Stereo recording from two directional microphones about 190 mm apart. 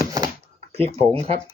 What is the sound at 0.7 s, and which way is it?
Speech, 30° right (ahead or behind).